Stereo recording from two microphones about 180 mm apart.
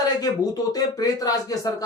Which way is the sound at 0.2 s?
20° left (ahead or behind).